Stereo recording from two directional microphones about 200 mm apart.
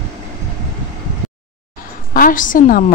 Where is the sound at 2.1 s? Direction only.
45° left (ahead or behind).